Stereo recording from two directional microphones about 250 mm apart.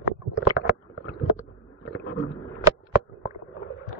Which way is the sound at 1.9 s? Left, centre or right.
Left.